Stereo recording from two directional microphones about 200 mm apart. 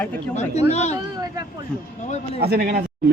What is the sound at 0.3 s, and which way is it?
Speech, 35° left (ahead or behind).